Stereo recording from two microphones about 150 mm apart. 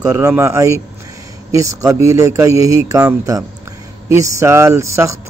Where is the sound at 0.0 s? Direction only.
20° right (ahead or behind).